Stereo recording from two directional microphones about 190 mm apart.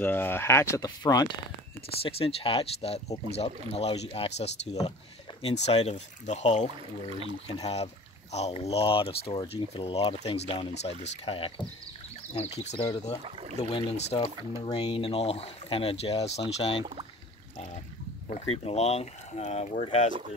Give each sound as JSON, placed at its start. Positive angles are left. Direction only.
{"t": 0.0, "sound": "speech", "side_deg": 10}
{"t": 13.2, "sound": "speech", "side_deg": -30}
{"t": 13.6, "sound": "speech", "side_deg": 30}
{"t": 18.3, "sound": "speech", "side_deg": 35}